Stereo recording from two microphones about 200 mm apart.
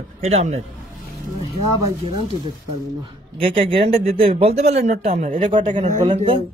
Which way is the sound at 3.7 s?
25° right (ahead or behind).